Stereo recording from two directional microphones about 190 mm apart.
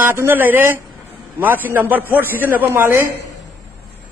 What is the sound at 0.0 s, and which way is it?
A man's voice, 10° right (ahead or behind).